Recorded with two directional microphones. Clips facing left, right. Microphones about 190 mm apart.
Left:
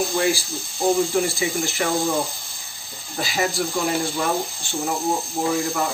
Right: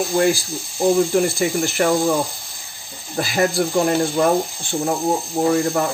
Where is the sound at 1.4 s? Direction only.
55° right (ahead or behind).